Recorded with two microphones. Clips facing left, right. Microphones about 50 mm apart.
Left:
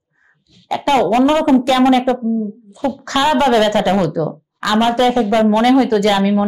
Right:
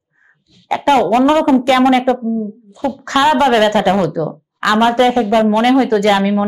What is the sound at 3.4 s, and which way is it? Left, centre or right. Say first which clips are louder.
A woman's voice: right 1 dB; right.